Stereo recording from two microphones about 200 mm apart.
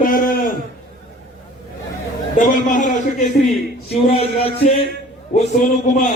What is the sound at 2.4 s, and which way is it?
Speech, 40° left (ahead or behind).